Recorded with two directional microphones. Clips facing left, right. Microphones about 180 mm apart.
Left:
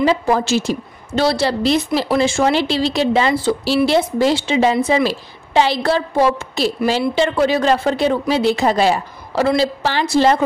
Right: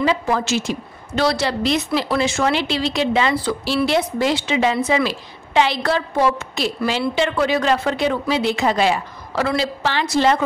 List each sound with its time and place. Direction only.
0.0 s a woman's voice: 35° left (ahead or behind)